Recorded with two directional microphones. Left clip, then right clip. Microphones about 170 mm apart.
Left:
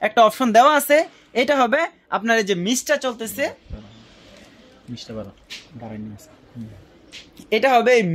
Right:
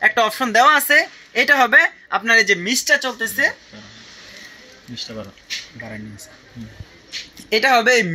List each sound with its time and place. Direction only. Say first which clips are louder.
0.0 s speech: left 1 dB; 85° left
4.9 s speech: right 3 dB; 15° left (ahead or behind)
7.4 s speech: right 1 dB; 70° left (ahead or behind)